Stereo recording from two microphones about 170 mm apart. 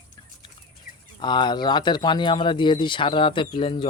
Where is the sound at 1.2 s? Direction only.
25° left (ahead or behind).